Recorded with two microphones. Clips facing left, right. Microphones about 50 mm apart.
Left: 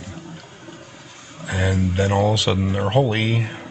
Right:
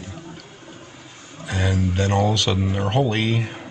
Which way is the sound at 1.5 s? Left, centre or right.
Centre.